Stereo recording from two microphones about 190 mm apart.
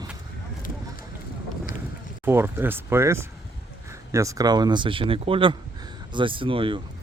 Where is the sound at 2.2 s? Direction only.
10° right (ahead or behind); by 6.8 s 25° right (ahead or behind).